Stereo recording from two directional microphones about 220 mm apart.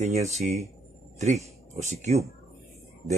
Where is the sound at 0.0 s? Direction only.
30° right (ahead or behind).